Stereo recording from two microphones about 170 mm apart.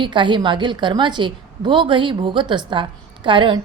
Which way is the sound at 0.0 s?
30° right (ahead or behind).